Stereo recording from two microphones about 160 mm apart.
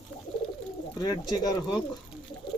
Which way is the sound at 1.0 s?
25° left (ahead or behind).